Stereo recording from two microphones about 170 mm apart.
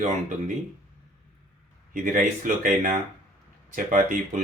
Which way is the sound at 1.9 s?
50° right (ahead or behind).